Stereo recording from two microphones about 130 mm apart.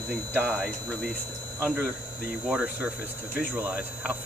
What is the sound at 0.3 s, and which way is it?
Speech, 10° right (ahead or behind).